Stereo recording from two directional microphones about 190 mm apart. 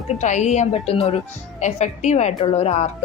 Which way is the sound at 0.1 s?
40° left (ahead or behind).